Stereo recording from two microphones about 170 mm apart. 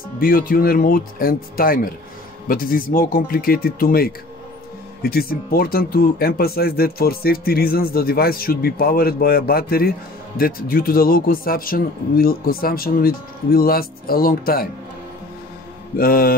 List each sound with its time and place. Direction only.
0.2 s speech: 60° left (ahead or behind)
16.0 s speech: 60° left (ahead or behind)